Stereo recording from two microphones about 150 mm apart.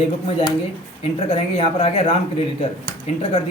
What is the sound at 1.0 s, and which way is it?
Speech, 40° left (ahead or behind).